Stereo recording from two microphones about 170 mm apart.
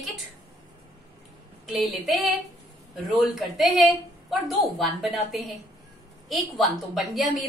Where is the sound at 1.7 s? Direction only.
Centre (ahead or behind).